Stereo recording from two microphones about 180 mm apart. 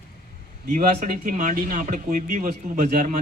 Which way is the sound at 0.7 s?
45° right (ahead or behind).